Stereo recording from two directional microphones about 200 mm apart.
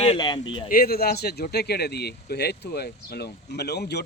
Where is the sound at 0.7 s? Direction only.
50° left (ahead or behind).